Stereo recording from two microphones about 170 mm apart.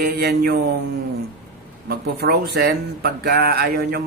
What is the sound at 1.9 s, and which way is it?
Speech, 65° right (ahead or behind).